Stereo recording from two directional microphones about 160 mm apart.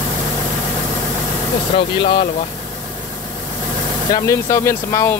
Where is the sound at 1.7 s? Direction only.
30° left (ahead or behind).